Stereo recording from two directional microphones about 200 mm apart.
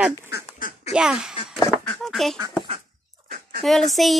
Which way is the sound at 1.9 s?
Centre (ahead or behind).